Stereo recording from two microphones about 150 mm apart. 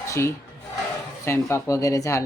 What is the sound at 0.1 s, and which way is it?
Speech, 20° left (ahead or behind).